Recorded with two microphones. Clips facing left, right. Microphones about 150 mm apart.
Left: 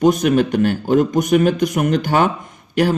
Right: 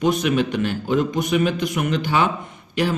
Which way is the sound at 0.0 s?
40° left (ahead or behind).